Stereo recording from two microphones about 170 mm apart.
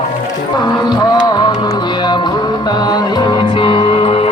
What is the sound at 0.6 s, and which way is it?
Music, 25° left (ahead or behind).